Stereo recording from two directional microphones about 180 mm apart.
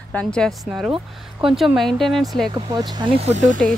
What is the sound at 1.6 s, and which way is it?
Speech, centre (ahead or behind).